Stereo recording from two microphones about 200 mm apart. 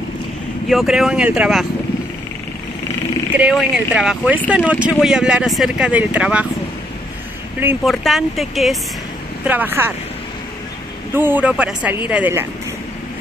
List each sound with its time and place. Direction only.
0.7 s speech: centre (ahead or behind)
3.3 s speech: 5° right (ahead or behind)
7.8 s speech: centre (ahead or behind)
11.1 s speech: 10° right (ahead or behind)